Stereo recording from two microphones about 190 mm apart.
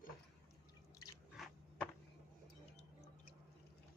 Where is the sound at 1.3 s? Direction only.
Centre (ahead or behind).